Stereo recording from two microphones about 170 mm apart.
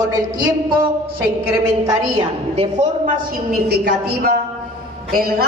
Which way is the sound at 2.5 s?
35° right (ahead or behind).